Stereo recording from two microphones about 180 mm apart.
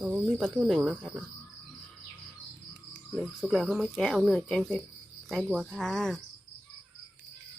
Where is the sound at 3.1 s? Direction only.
Centre (ahead or behind).